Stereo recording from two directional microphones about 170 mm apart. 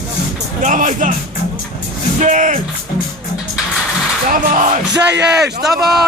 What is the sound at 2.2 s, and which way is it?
Speech, 45° right (ahead or behind).